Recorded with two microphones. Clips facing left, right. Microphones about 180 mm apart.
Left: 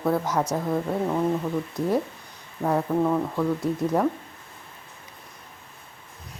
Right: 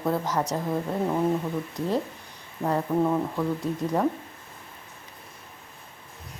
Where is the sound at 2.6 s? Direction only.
Centre (ahead or behind).